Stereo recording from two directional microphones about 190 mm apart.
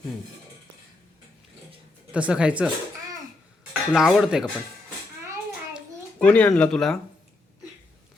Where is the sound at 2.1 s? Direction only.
5° right (ahead or behind).